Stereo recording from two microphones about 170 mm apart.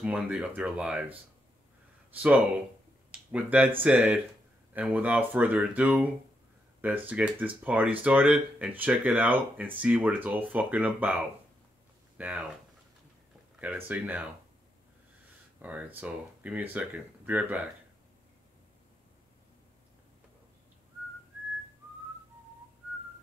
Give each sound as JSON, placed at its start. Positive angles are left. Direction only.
{"t": 0.0, "sound": "speech", "side_deg": -5}
{"t": 2.1, "sound": "speech", "side_deg": -5}
{"t": 13.6, "sound": "speech", "side_deg": -10}
{"t": 15.6, "sound": "speech", "side_deg": -10}